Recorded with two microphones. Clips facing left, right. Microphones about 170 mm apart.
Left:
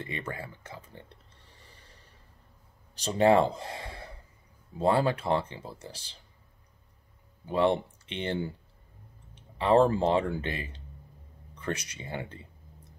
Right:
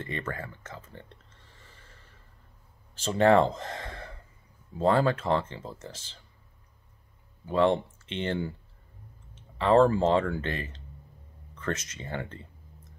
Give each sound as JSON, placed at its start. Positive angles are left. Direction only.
{"t": 0.0, "sound": "a sound", "side_deg": 15}
{"t": 2.9, "sound": "speech", "side_deg": 15}
{"t": 7.4, "sound": "speech", "side_deg": 15}